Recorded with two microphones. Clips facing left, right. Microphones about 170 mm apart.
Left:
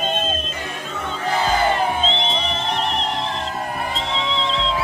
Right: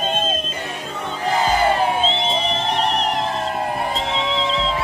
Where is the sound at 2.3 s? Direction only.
35° right (ahead or behind).